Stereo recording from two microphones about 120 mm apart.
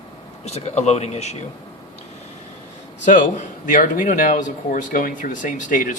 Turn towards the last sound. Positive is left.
turn(degrees=90)